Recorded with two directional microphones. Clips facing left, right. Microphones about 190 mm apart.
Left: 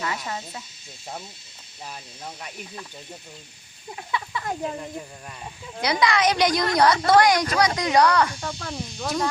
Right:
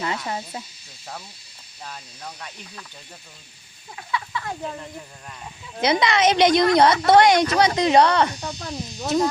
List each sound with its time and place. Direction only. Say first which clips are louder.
0.0 s speech: right 3 dB; 30° right (ahead or behind)
1.8 s speech: even; 10° left (ahead or behind)
4.1 s a sound: even; 25° left (ahead or behind)
5.8 s a woman's voice: right 2 dB; 25° right (ahead or behind)